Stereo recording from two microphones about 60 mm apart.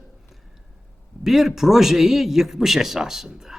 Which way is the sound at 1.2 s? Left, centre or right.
Centre.